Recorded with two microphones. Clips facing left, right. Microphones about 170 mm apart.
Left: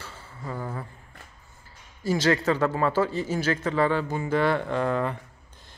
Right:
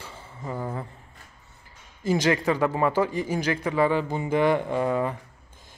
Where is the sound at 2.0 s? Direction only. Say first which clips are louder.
Even; 15° right (ahead or behind).